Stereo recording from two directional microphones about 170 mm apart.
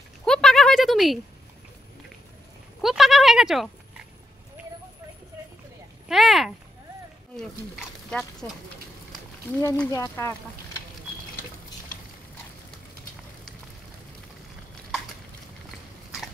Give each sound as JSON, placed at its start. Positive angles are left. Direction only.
{"t": 0.2, "sound": "a sound", "side_deg": 5}
{"t": 2.8, "sound": "speech", "side_deg": 0}
{"t": 6.0, "sound": "speech", "side_deg": 0}
{"t": 9.6, "sound": "speech", "side_deg": 15}